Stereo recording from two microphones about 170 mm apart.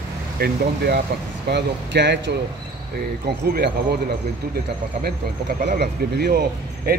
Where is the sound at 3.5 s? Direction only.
70° right (ahead or behind).